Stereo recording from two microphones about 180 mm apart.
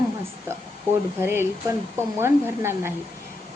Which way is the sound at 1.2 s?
15° right (ahead or behind).